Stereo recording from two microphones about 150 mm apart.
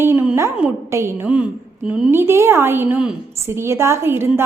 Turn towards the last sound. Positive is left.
turn(degrees=-15)  # may be behind; listen again after turning